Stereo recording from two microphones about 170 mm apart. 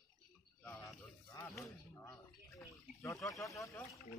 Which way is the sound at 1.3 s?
15° left (ahead or behind).